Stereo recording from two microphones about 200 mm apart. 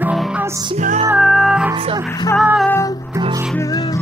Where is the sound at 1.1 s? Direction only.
Centre (ahead or behind).